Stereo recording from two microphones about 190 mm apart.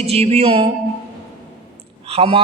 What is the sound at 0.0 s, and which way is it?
Speech, 30° right (ahead or behind).